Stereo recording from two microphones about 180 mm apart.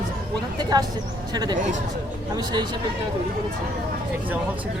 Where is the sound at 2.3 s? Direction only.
20° right (ahead or behind).